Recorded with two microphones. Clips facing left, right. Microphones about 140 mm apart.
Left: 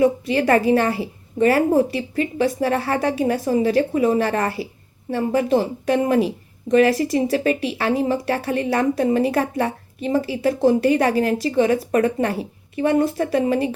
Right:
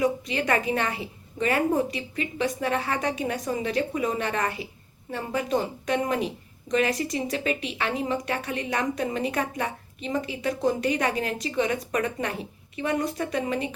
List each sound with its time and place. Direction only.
0.0 s speech: 35° left (ahead or behind)